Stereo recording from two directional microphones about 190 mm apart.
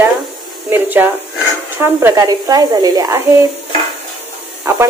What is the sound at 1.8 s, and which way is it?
Speech, 15° right (ahead or behind).